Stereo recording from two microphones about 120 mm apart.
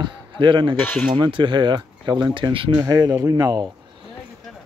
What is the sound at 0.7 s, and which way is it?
Speech, 15° left (ahead or behind).